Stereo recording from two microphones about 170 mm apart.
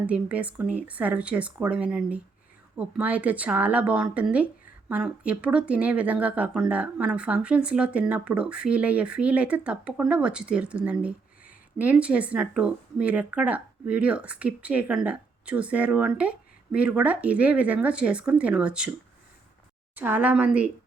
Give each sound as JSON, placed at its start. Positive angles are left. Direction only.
{"t": 0.0, "sound": "speech", "side_deg": -10}
{"t": 20.0, "sound": "speech", "side_deg": -10}